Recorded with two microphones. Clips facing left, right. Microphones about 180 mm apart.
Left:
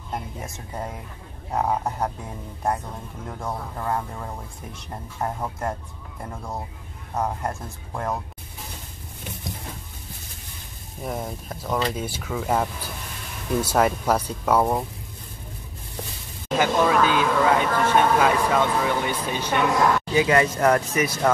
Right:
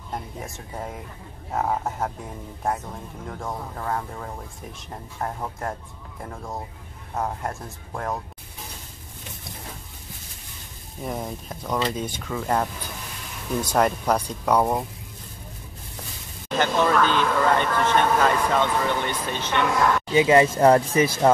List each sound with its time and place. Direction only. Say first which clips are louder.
0.1 s speech: left 1 dB; centre (ahead or behind)
3.3 s speech: left 1 dB; centre (ahead or behind)
11.1 s speech: even; centre (ahead or behind)
16.5 s speech: left 1 dB; 10° left (ahead or behind)
20.1 s speech: right 3 dB; 20° right (ahead or behind)